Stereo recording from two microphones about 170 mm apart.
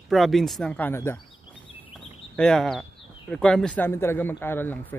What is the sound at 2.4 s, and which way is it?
Speech, 5° left (ahead or behind).